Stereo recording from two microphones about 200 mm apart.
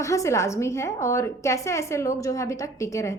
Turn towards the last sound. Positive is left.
turn(degrees=15)  # may be behind; listen again after turning